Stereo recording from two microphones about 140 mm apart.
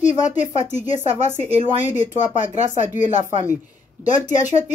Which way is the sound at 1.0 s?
60° left (ahead or behind).